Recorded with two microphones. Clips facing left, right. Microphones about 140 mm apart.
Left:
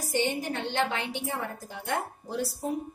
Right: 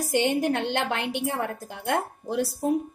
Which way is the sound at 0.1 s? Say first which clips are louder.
Right 5 dB; 65° right (ahead or behind).